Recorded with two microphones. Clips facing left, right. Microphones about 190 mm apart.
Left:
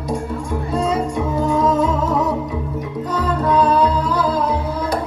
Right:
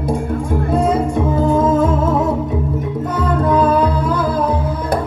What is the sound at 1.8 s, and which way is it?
Music, 50° right (ahead or behind).